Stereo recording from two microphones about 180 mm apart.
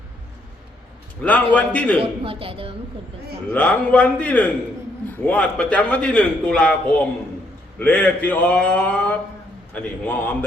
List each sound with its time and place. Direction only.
1.2 s a man's voice: 10° left (ahead or behind)
2.0 s a woman's voice: 30° right (ahead or behind)
3.5 s a man's voice: 10° left (ahead or behind)
7.8 s a man's voice: 10° left (ahead or behind)